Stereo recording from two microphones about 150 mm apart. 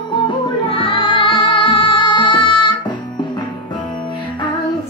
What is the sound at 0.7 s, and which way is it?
Music, 35° left (ahead or behind).